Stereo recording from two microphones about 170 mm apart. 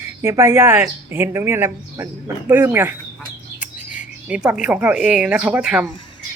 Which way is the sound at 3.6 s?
50° left (ahead or behind).